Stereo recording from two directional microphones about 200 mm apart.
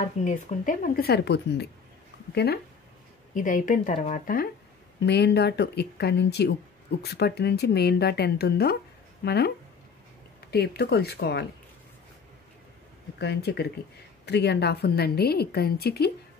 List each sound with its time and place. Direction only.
0.0 s a woman's voice: 35° left (ahead or behind); by 2.6 s 55° left (ahead or behind)
3.3 s speech: 40° left (ahead or behind)
5.0 s a woman's voice: 55° left (ahead or behind)
10.5 s a woman's voice: 55° left (ahead or behind)
13.2 s a woman's voice: 55° left (ahead or behind)